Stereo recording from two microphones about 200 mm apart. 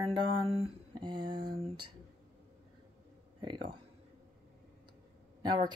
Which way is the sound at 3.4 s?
25° right (ahead or behind).